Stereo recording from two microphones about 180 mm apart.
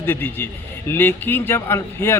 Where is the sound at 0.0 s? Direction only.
10° left (ahead or behind).